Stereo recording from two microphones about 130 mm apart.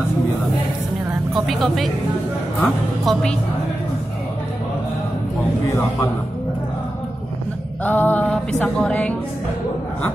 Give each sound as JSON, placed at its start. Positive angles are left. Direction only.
{"t": 1.3, "sound": "speech", "side_deg": 0}
{"t": 5.7, "sound": "a man's voice", "side_deg": 25}
{"t": 7.8, "sound": "music", "side_deg": 15}